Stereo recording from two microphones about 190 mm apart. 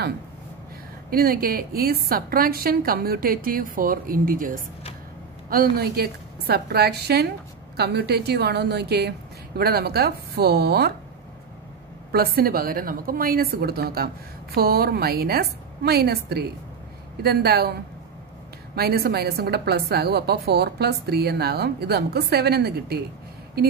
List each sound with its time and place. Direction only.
1.1 s a woman's voice: 50° right (ahead or behind)
12.1 s a woman's voice: 55° right (ahead or behind)
18.8 s a woman's voice: 55° right (ahead or behind)